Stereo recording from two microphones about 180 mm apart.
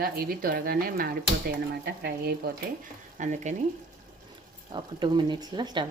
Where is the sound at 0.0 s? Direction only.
55° right (ahead or behind).